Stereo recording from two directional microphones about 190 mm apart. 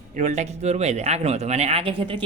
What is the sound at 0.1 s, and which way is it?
A man's voice, 35° right (ahead or behind).